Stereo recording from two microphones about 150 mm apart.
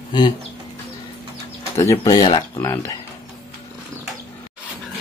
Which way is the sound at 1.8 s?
20° left (ahead or behind).